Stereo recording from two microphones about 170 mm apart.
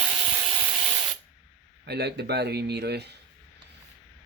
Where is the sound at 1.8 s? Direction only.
75° right (ahead or behind).